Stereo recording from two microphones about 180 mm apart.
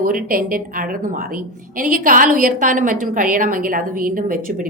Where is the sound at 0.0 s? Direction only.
50° right (ahead or behind).